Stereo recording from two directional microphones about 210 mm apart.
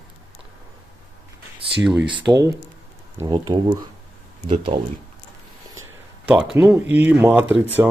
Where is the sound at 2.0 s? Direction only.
25° right (ahead or behind).